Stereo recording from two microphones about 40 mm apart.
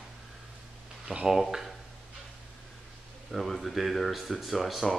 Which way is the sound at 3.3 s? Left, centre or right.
Centre.